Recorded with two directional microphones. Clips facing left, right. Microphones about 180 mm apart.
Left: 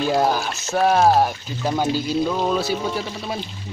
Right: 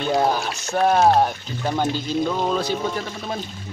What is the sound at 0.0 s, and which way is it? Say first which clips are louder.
Speech: left 1 dB; centre (ahead or behind).